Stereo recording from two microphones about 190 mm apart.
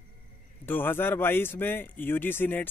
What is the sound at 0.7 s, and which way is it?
A man's voice, 10° left (ahead or behind).